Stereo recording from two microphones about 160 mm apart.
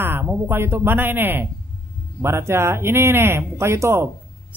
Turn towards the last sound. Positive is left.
turn(degrees=-15)  # may be behind; listen again after turning